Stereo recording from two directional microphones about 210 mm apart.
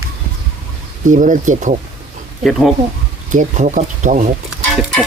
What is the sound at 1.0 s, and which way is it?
Speech, 40° right (ahead or behind).